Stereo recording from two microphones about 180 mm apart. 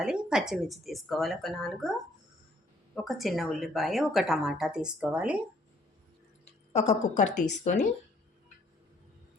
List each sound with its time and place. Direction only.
0.0 s a woman's voice: 5° right (ahead or behind)
2.9 s a woman's voice: centre (ahead or behind)
6.4 s speech: 35° left (ahead or behind)